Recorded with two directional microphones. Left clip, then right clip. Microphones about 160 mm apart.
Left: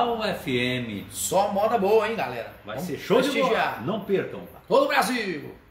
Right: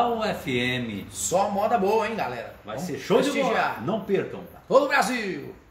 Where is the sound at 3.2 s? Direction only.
10° left (ahead or behind).